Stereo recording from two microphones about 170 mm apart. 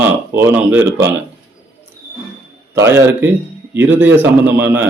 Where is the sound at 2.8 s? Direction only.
15° right (ahead or behind).